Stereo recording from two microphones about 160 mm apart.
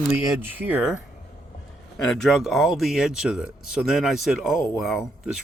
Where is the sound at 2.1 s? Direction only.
Centre (ahead or behind).